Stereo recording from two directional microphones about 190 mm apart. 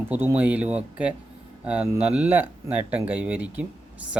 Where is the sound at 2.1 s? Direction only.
10° right (ahead or behind).